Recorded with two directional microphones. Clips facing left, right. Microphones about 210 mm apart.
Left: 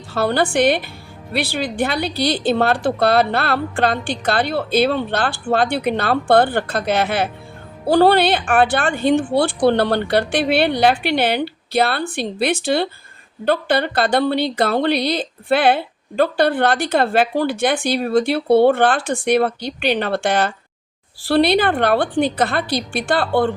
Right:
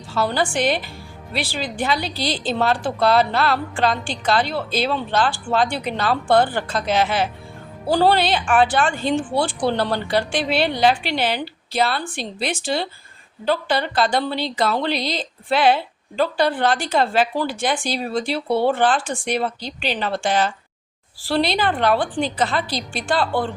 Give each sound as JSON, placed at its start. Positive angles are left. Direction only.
{"t": 0.1, "sound": "speech", "side_deg": 60}